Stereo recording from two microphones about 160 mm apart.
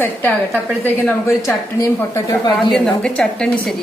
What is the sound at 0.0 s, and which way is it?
A woman's voice, 10° left (ahead or behind).